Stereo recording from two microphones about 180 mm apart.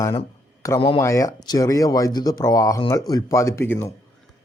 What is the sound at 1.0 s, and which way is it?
Speech, 15° left (ahead or behind).